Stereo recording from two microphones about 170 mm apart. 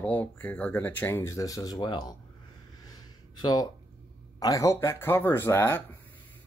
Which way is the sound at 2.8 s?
25° left (ahead or behind).